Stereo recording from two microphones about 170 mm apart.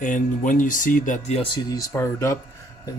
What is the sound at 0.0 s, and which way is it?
Speech, 50° left (ahead or behind).